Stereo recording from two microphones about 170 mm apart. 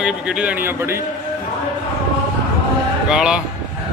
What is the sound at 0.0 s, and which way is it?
Speech, 5° right (ahead or behind).